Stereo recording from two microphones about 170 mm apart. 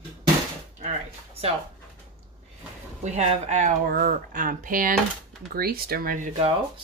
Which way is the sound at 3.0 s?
40° right (ahead or behind).